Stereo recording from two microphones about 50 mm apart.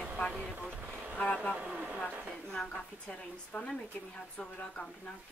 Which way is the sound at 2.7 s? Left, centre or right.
Left.